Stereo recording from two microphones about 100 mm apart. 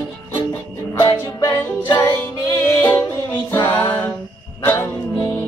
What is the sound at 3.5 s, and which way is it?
A capella, 25° left (ahead or behind).